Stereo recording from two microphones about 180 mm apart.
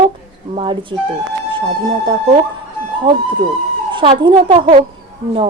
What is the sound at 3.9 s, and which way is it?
Speech, 25° right (ahead or behind).